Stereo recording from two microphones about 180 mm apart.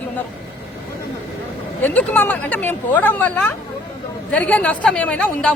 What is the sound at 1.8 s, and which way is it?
Speech, 10° left (ahead or behind).